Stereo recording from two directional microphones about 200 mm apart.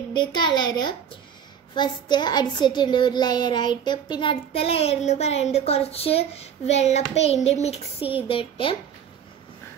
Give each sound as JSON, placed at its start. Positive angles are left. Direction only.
{"t": 0.1, "sound": "a child's voice", "side_deg": 20}